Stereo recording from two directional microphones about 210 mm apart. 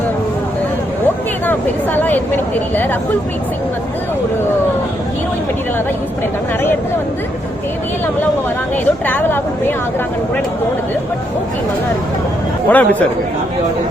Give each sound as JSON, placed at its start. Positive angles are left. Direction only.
{"t": 1.0, "sound": "speech", "side_deg": 10}
{"t": 8.8, "sound": "speech", "side_deg": 10}
{"t": 12.6, "sound": "speech", "side_deg": 5}